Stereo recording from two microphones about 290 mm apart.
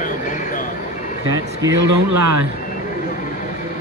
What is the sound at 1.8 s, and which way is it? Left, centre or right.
Speech, right.